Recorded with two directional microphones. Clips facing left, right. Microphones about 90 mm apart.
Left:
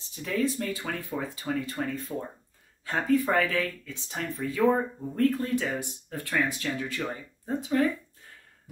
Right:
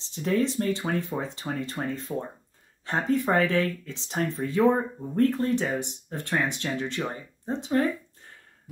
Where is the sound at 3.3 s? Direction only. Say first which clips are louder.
Right 3 dB; 30° right (ahead or behind).